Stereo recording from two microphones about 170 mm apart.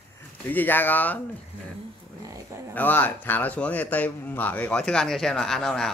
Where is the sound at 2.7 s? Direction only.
10° left (ahead or behind).